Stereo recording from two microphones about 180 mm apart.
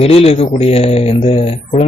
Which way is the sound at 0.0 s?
30° left (ahead or behind).